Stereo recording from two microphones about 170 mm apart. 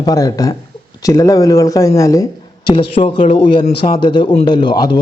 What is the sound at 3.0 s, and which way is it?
A man's voice, 35° left (ahead or behind).